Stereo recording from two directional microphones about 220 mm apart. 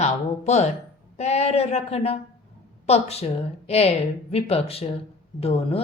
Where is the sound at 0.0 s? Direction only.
30° left (ahead or behind).